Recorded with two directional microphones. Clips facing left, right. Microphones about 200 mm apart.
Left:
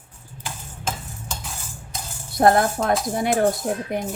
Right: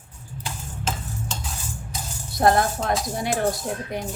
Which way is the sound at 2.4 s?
55° left (ahead or behind).